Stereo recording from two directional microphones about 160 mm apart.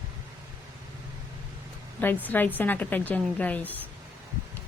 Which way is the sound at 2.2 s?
10° left (ahead or behind).